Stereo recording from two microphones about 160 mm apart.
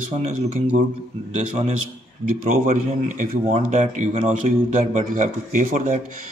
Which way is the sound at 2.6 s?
55° right (ahead or behind).